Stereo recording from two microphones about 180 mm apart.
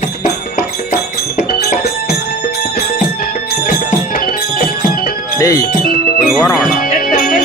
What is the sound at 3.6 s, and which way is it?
Music, 45° left (ahead or behind).